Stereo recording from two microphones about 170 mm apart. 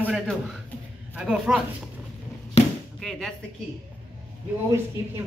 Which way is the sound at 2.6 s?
40° left (ahead or behind).